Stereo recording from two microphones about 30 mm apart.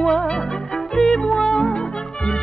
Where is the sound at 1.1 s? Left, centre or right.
Left.